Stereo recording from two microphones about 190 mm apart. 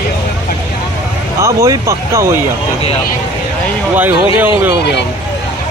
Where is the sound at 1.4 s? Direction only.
15° right (ahead or behind).